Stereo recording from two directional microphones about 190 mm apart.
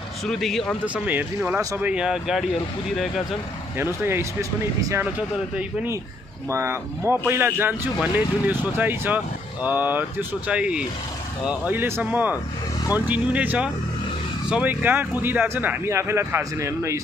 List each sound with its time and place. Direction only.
0.3 s speech: centre (ahead or behind)
3.7 s speech: 10° right (ahead or behind)
6.5 s speech: 15° right (ahead or behind)